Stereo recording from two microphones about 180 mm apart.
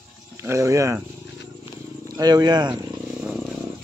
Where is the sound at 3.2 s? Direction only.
5° right (ahead or behind).